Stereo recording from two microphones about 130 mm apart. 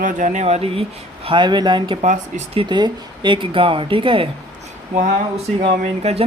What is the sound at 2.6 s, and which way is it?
Speech, 35° right (ahead or behind).